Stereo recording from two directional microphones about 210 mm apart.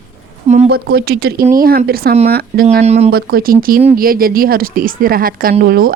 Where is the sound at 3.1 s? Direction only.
45° right (ahead or behind).